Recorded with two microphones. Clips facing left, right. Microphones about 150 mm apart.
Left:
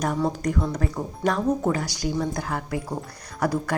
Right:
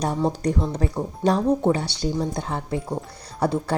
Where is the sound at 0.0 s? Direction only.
30° right (ahead or behind).